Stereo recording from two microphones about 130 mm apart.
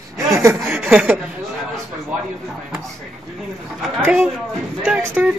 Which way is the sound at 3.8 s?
10° right (ahead or behind).